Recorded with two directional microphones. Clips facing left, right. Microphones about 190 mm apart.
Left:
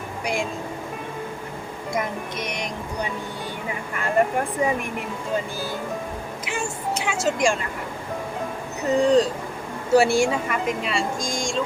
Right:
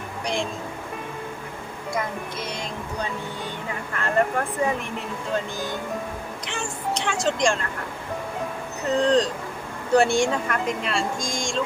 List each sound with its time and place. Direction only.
1.9 s speech: 20° left (ahead or behind)
9.0 s speech: 10° left (ahead or behind)